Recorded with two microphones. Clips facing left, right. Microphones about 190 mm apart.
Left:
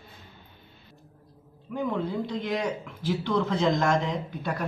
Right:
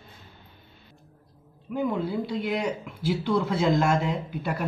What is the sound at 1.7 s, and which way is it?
Speech, 5° right (ahead or behind).